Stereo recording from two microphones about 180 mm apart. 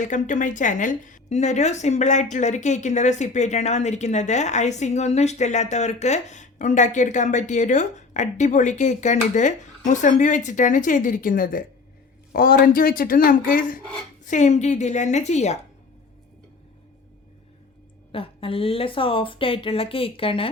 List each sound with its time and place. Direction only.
0.1 s a woman's voice: 45° left (ahead or behind)
18.1 s a woman's voice: 30° left (ahead or behind)